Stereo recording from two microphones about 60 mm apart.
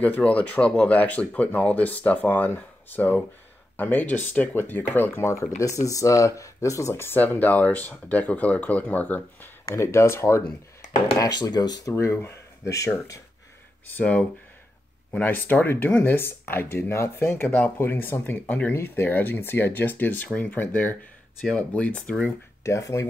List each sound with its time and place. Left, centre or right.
0.2 s speech: left
5.3 s speech: left
7.2 s speech: left
9.7 s speech: left
11.1 s speech: left
11.9 s speech: left
12.6 s speech: left
13.8 s speech: left
15.2 s speech: left
18.7 s speech: left
22.6 s speech: left